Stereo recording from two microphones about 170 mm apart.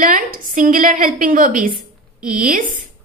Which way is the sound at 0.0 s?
55° right (ahead or behind).